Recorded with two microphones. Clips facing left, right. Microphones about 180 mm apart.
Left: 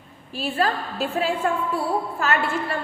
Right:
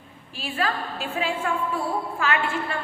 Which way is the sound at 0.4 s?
40° left (ahead or behind).